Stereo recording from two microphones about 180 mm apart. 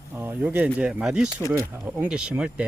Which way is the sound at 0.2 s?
10° right (ahead or behind).